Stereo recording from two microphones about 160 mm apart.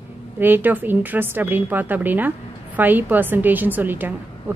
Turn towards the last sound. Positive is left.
turn(degrees=-10)  # may be behind; listen again after turning